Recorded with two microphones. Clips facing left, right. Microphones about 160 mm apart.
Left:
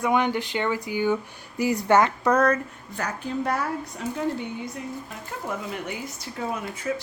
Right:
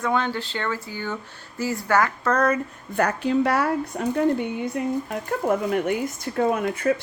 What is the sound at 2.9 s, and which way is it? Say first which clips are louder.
Speech: right 8 dB; 60° right (ahead or behind).